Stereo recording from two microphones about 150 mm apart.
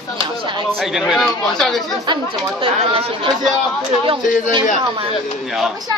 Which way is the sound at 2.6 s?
35° right (ahead or behind).